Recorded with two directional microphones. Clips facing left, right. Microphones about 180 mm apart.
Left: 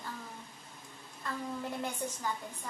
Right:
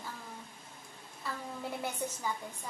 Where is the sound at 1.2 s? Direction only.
5° right (ahead or behind).